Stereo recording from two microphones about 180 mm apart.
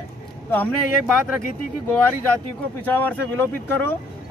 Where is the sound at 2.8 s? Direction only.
10° left (ahead or behind).